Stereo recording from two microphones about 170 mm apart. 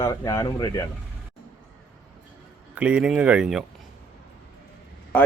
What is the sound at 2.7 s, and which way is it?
Speech, 5° right (ahead or behind).